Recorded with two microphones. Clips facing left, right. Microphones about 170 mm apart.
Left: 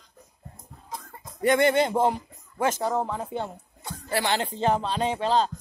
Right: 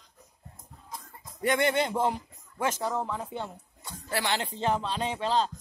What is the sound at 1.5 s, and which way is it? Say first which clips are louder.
Speech: left 5 dB; 40° left (ahead or behind).